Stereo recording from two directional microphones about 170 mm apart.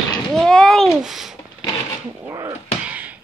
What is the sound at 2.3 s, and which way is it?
Speech, 20° right (ahead or behind).